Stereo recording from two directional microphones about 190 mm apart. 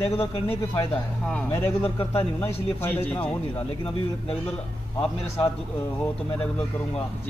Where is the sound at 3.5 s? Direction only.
30° left (ahead or behind).